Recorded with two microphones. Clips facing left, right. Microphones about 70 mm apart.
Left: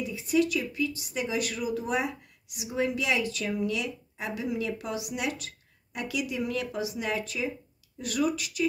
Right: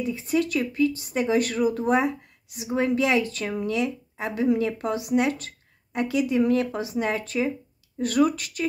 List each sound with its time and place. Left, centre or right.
0.0 s speech: right